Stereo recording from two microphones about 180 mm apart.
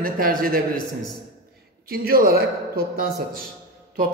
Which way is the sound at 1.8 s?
55° right (ahead or behind).